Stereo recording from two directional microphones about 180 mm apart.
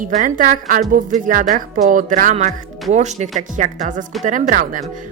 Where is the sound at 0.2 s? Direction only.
45° right (ahead or behind).